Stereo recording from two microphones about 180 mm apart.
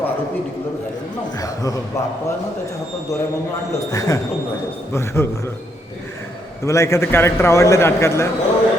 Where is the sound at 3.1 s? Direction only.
15° left (ahead or behind).